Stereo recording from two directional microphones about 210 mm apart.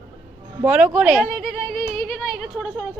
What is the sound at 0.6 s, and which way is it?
A woman's voice, 10° right (ahead or behind).